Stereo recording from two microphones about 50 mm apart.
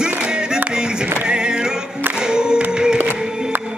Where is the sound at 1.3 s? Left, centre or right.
Centre.